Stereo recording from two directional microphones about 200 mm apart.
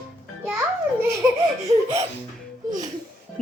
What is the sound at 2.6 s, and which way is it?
Music, 20° right (ahead or behind).